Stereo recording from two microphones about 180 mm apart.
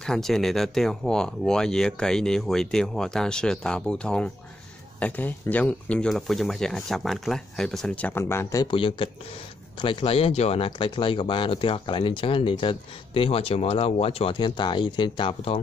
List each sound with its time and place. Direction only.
0.0 s speech: centre (ahead or behind); by 15.6 s 30° left (ahead or behind)